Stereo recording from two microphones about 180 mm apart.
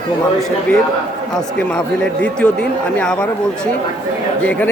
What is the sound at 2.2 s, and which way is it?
Speech, 5° left (ahead or behind).